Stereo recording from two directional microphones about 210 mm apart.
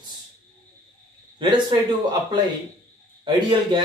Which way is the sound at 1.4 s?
20° right (ahead or behind).